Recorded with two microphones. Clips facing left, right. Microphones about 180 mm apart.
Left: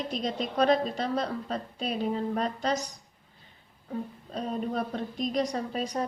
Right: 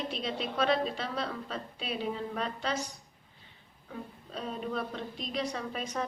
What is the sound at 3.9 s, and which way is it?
A woman's voice, 40° left (ahead or behind).